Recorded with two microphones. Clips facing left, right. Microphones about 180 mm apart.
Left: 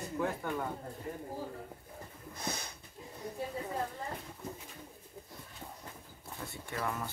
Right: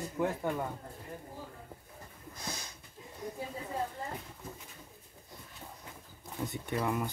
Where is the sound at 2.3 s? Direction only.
55° left (ahead or behind).